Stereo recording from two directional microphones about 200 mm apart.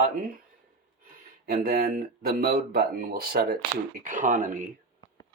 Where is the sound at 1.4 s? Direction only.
50° right (ahead or behind).